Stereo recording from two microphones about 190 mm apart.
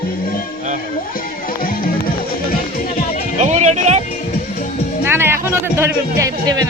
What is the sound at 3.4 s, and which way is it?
Music, 35° right (ahead or behind).